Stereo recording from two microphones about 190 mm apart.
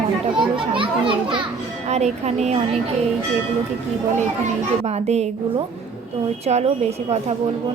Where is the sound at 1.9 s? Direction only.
35° right (ahead or behind).